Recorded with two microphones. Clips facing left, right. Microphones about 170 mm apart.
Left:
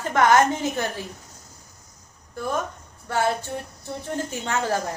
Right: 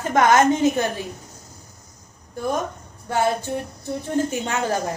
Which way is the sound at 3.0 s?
20° right (ahead or behind).